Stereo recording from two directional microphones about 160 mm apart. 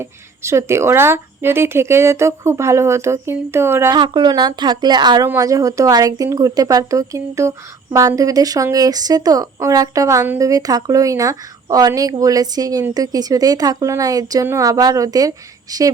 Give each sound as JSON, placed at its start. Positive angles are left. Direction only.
{"t": 0.0, "sound": "a woman's voice", "side_deg": -15}
{"t": 3.9, "sound": "speech", "side_deg": -30}